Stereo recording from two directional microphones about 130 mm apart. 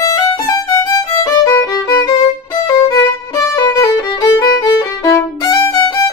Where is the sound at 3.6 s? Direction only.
25° left (ahead or behind).